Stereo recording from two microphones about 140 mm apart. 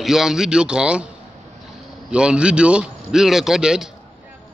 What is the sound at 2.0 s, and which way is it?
A man's voice, 5° right (ahead or behind).